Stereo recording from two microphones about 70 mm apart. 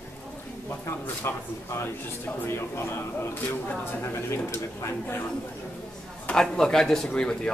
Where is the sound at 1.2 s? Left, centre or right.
Left.